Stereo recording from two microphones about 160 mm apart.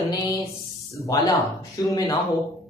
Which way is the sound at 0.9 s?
20° left (ahead or behind).